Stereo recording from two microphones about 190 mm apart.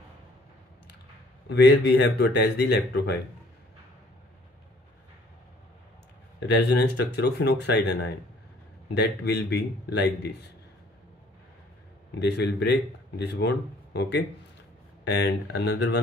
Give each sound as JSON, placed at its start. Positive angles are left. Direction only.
{"t": 1.5, "sound": "speech", "side_deg": 60}
{"t": 6.4, "sound": "speech", "side_deg": 65}
{"t": 12.2, "sound": "speech", "side_deg": 65}